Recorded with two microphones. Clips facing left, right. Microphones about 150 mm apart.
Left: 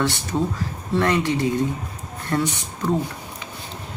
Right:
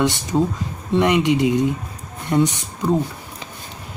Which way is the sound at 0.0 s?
20° right (ahead or behind).